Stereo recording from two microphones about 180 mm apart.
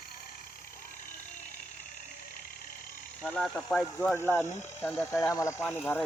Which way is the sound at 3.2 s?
5° left (ahead or behind).